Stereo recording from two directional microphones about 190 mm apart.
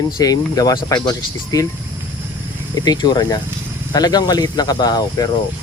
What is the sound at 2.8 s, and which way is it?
Speech, 20° left (ahead or behind).